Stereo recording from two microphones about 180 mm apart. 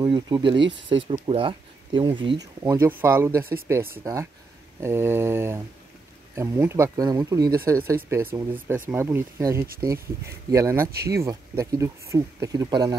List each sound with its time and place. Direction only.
0.0 s speech: 25° right (ahead or behind)
0.6 s speech: 80° right
0.8 s speech: 30° right (ahead or behind)
2.6 s speech: 15° right (ahead or behind)